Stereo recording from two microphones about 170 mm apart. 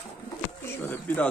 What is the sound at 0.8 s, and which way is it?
Bird, 10° left (ahead or behind).